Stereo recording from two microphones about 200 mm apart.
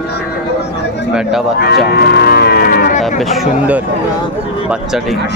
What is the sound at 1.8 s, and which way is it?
Cattle, 50° left (ahead or behind).